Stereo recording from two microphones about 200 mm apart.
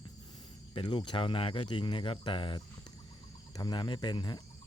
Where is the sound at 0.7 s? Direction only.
25° left (ahead or behind).